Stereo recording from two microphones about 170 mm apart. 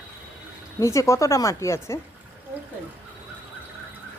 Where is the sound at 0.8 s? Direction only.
15° left (ahead or behind).